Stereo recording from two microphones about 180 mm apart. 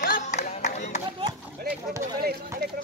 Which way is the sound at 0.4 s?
40° left (ahead or behind).